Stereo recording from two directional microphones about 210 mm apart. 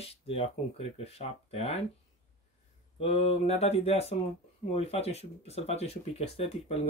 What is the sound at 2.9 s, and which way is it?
Speech, 30° left (ahead or behind).